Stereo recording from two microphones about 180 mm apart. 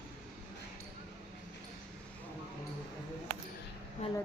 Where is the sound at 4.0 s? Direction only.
35° left (ahead or behind).